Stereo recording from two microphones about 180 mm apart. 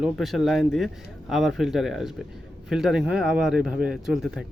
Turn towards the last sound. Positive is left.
turn(degrees=-5)  # may be behind; listen again after turning